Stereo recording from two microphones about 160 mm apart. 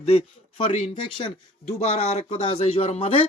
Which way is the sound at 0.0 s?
40° left (ahead or behind).